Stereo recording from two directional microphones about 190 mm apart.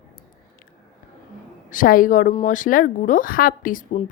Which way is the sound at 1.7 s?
45° left (ahead or behind).